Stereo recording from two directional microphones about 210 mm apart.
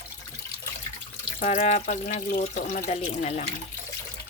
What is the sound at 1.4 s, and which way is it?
Speech, 35° left (ahead or behind).